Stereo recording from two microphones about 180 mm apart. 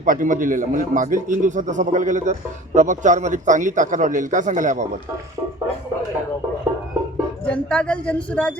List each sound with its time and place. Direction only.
0.0 s a man's voice: 50° right (ahead or behind)
7.4 s speech: 5° left (ahead or behind)